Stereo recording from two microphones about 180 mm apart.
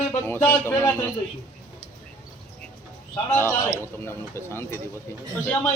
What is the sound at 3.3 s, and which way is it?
A man's voice, 10° left (ahead or behind).